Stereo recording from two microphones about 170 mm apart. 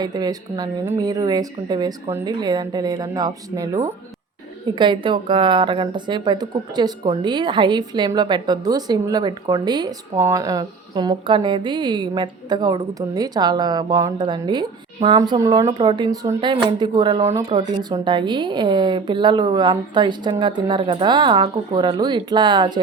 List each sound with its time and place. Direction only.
0.0 s a woman's voice: 25° right (ahead or behind)